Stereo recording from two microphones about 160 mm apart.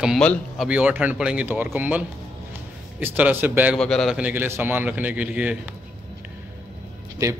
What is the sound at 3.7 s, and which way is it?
Speech, 5° left (ahead or behind).